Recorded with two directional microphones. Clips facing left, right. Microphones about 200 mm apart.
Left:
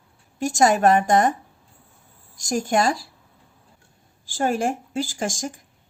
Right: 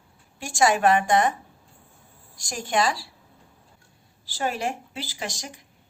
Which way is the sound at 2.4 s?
45° left (ahead or behind).